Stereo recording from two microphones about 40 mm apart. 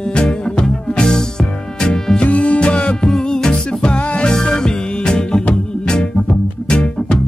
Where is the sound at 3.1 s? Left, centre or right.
Centre.